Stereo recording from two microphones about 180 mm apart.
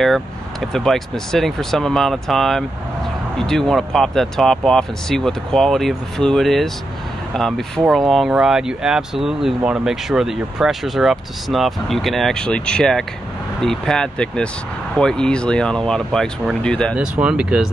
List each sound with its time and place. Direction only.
0.7 s speech: centre (ahead or behind)
16.9 s speech: 5° right (ahead or behind)